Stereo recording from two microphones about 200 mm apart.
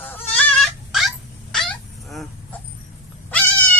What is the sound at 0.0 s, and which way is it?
Goat, 10° left (ahead or behind).